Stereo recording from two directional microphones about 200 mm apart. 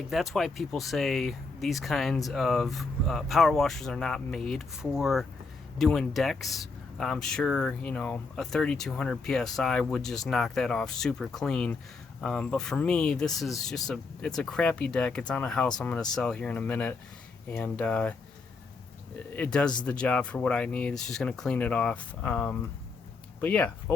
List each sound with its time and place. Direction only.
0.1 s speech: centre (ahead or behind)
19.3 s speech: 5° left (ahead or behind)